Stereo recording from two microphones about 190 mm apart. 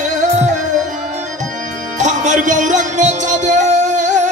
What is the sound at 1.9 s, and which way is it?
Music, 40° right (ahead or behind).